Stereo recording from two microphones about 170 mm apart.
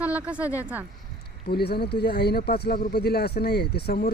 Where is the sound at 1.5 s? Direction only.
65° left (ahead or behind).